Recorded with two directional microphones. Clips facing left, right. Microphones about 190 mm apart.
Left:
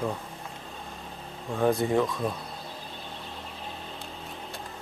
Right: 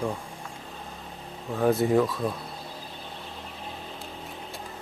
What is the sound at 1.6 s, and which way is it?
Speech, 5° right (ahead or behind).